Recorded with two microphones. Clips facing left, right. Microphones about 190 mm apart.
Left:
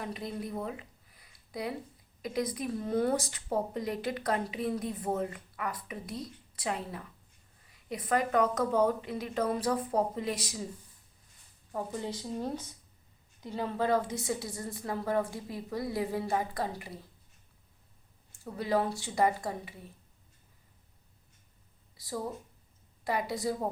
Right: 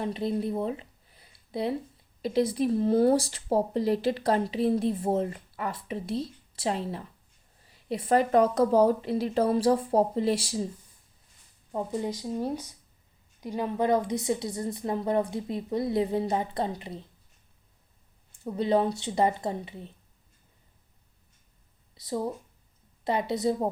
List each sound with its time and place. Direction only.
0.0 s speech: 30° right (ahead or behind)
11.7 s a woman's voice: 20° right (ahead or behind)
18.3 s a woman's voice: 25° right (ahead or behind)
21.9 s a woman's voice: 20° right (ahead or behind)